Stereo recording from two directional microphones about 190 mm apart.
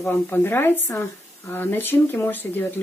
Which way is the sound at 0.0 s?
10° left (ahead or behind).